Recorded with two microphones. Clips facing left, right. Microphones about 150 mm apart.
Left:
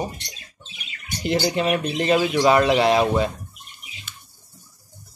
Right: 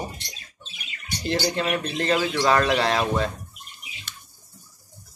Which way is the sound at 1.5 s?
15° left (ahead or behind).